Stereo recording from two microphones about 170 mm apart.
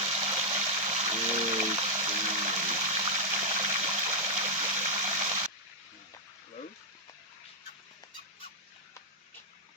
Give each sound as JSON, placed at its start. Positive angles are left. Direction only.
{"t": 0.0, "sound": "water", "side_deg": -35}